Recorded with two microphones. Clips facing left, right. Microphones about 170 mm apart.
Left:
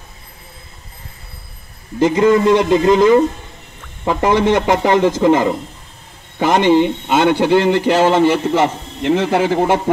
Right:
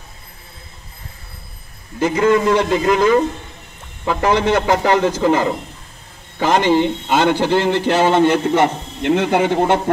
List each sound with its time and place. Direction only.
2.0 s a man's voice: 25° left (ahead or behind); by 9.8 s 5° left (ahead or behind)